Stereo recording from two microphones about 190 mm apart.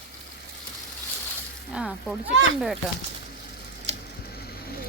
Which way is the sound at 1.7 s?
5° right (ahead or behind).